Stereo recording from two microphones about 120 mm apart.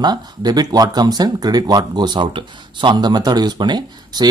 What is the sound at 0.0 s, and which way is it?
Speech, 35° right (ahead or behind).